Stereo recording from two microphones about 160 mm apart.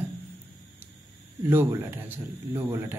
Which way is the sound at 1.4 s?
15° right (ahead or behind).